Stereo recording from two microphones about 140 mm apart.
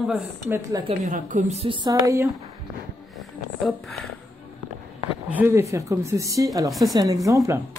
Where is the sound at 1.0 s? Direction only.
65° right (ahead or behind).